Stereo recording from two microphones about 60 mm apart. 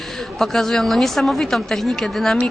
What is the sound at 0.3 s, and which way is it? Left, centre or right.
A man's voice, centre.